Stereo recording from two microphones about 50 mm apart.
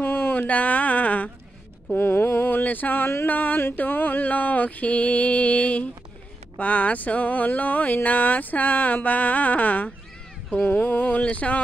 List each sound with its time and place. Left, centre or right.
0.0 s speech: left
2.0 s a sound: left
3.3 s speech: left